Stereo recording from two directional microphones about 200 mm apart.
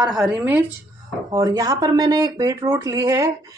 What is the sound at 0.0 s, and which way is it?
Speech, centre (ahead or behind).